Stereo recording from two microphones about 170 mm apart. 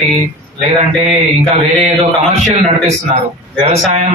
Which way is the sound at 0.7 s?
45° right (ahead or behind).